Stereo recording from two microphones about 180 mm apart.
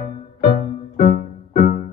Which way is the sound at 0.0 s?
50° left (ahead or behind).